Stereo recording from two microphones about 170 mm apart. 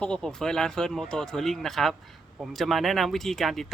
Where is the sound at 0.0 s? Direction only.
5° left (ahead or behind).